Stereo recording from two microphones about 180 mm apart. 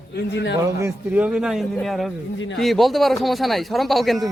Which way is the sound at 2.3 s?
90° left.